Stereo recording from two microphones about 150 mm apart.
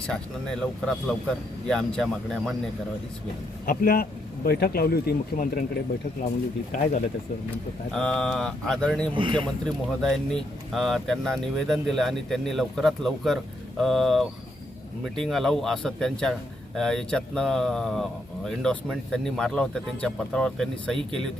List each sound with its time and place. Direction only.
0.1 s a man's voice: 5° left (ahead or behind)
3.7 s speech: 80° left
7.5 s a man's voice: 5° left (ahead or behind)
9.1 s speech: 35° right (ahead or behind)
10.0 s a man's voice: 5° left (ahead or behind)